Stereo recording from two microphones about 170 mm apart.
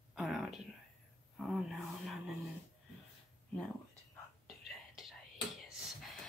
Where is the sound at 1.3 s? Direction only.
Centre (ahead or behind).